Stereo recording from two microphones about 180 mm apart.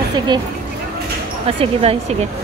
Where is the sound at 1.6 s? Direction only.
35° right (ahead or behind).